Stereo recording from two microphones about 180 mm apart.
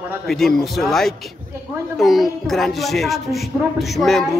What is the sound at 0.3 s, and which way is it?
A man's voice, centre (ahead or behind).